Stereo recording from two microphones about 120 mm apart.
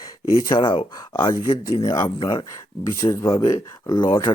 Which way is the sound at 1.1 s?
30° left (ahead or behind).